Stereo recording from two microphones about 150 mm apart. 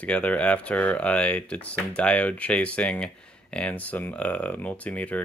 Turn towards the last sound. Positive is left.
turn(degrees=10)  # may be behind; listen again after turning